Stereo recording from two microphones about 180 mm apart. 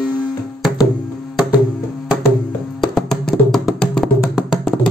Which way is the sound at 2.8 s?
Centre (ahead or behind).